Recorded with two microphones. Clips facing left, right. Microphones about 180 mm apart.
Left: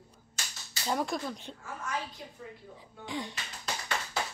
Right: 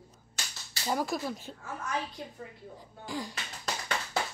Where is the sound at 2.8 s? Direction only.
Centre (ahead or behind).